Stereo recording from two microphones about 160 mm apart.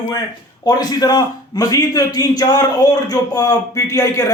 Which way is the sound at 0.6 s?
25° left (ahead or behind).